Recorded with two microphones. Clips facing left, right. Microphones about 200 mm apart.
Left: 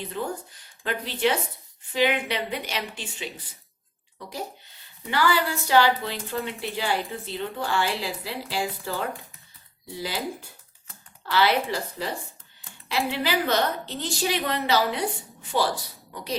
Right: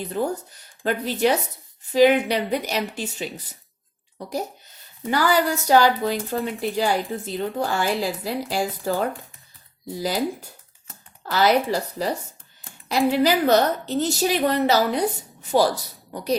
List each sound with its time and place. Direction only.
0.1 s a woman's voice: 40° right (ahead or behind)